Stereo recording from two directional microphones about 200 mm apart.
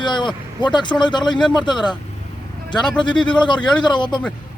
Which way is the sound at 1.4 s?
5° left (ahead or behind).